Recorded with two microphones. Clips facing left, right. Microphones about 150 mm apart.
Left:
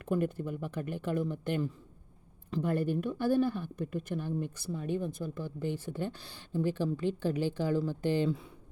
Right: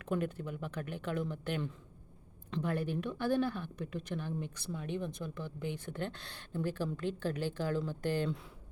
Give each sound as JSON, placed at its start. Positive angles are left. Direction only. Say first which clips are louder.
{"t": 0.1, "sound": "speech", "louder": "left 4 dB", "side_deg": 10}
{"t": 2.5, "sound": "speech", "louder": "left 4 dB", "side_deg": 10}
{"t": 2.7, "sound": "speech", "louder": "left 7 dB", "side_deg": 45}
{"t": 3.1, "sound": "speech", "louder": "left 3 dB", "side_deg": 10}